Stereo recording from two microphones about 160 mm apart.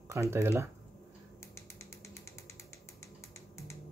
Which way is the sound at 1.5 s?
20° left (ahead or behind).